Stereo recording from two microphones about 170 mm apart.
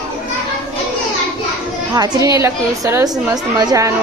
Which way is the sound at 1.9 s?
20° right (ahead or behind).